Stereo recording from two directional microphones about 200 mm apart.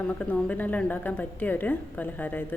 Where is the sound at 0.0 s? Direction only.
5° left (ahead or behind).